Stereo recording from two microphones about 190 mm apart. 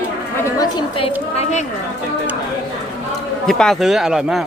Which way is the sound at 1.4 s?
35° left (ahead or behind).